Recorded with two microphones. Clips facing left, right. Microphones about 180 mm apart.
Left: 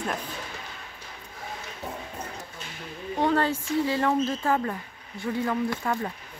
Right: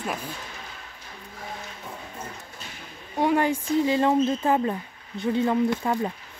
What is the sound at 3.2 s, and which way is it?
Speech, 15° right (ahead or behind).